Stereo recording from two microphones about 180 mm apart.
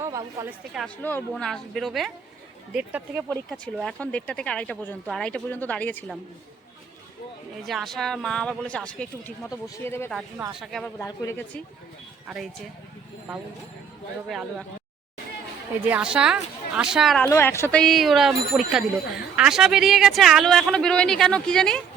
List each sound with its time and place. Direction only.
0.0 s a sound: 20° right (ahead or behind)
1.3 s speech: 5° left (ahead or behind)
3.8 s speech: 5° left (ahead or behind)
7.6 s speech: centre (ahead or behind)
10.6 s speech: centre (ahead or behind)
11.0 s speech: 15° left (ahead or behind)
15.9 s speech: 5° right (ahead or behind)
17.2 s speech: 15° left (ahead or behind)